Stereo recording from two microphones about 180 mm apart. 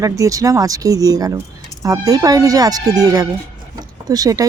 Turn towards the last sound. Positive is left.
turn(degrees=-20)  # may be behind; listen again after turning